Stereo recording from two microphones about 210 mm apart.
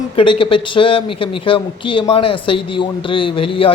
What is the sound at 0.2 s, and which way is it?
Speech, 25° left (ahead or behind).